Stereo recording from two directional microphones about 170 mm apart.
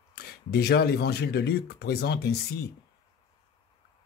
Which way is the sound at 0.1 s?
65° left (ahead or behind).